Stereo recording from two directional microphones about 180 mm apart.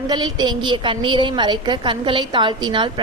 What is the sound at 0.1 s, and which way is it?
A woman's voice, 20° right (ahead or behind).